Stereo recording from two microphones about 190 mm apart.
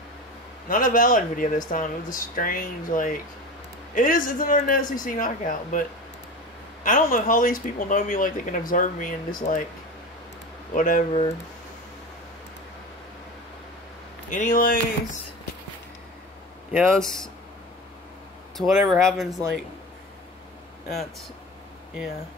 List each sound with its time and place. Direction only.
0.7 s speech: 45° left (ahead or behind)
10.7 s speech: 45° left (ahead or behind)
14.3 s speech: 45° left (ahead or behind)
16.9 s speech: 5° left (ahead or behind)
18.6 s speech: centre (ahead or behind)